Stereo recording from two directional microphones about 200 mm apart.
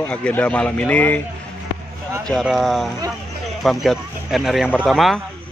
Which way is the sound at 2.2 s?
Centre (ahead or behind).